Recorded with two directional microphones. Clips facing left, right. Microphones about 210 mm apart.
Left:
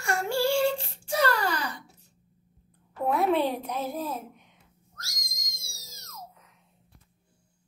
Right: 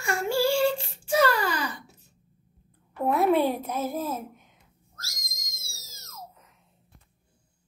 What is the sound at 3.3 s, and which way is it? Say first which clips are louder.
Speech: right 2 dB; 45° right (ahead or behind).